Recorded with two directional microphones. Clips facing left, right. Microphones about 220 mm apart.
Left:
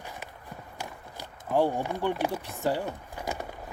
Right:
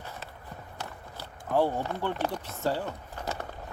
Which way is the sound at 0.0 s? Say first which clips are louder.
Even; 15° left (ahead or behind).